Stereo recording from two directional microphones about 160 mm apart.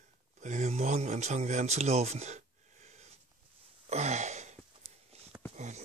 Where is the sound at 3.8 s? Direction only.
45° right (ahead or behind).